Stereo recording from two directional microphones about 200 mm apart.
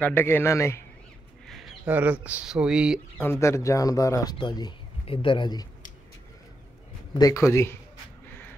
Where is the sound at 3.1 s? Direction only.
10° left (ahead or behind).